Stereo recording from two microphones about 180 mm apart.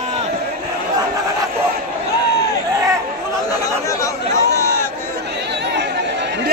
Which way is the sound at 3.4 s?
20° left (ahead or behind).